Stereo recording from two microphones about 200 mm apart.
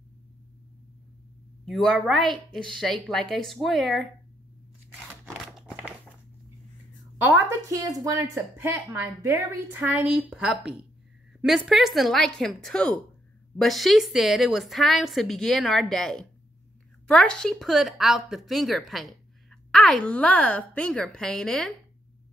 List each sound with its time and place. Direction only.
1.7 s a woman's voice: centre (ahead or behind)
5.6 s a sound: centre (ahead or behind)
7.2 s a woman's voice: 10° right (ahead or behind)